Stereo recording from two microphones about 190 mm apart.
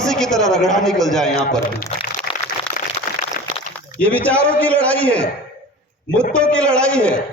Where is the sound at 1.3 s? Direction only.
40° left (ahead or behind).